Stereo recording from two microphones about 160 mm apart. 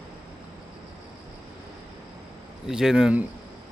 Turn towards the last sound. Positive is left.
turn(degrees=-5)  # may be behind; listen again after turning